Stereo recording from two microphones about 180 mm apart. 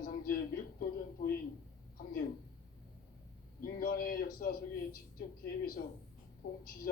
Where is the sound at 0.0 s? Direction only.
55° left (ahead or behind).